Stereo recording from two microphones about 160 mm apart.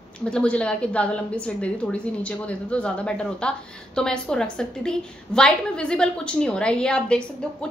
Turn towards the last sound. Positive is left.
turn(degrees=5)  # may be behind; listen again after turning